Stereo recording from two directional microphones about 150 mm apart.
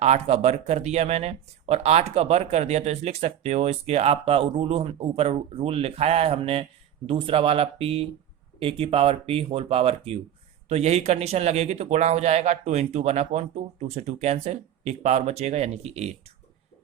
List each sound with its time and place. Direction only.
0.0 s speech: 50° right (ahead or behind)